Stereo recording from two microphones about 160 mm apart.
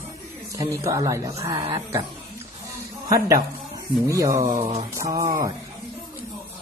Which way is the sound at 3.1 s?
20° right (ahead or behind).